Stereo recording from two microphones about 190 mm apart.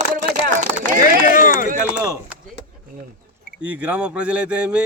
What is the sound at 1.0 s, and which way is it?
Chop, 45° left (ahead or behind).